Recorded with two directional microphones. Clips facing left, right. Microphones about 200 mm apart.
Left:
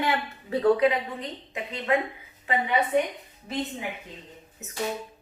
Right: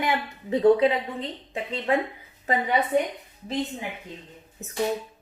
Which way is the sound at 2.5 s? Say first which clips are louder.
Right 2 dB; 40° right (ahead or behind).